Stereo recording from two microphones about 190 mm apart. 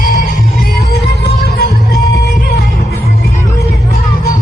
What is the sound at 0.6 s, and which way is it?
Music, 60° left (ahead or behind).